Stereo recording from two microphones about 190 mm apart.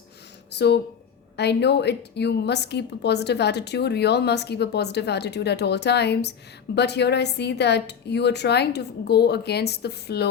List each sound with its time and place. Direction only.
0.5 s a woman's voice: 60° left (ahead or behind)